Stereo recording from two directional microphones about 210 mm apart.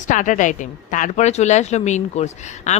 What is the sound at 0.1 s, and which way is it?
Speech, 35° left (ahead or behind).